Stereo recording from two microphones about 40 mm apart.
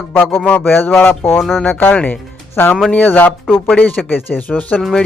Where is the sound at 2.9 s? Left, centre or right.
Left.